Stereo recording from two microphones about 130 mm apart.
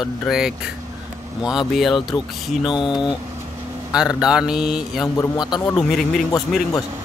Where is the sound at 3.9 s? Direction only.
5° right (ahead or behind).